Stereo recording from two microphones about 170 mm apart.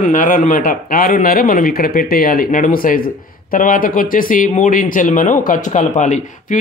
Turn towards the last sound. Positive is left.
turn(degrees=45)  # may be behind; listen again after turning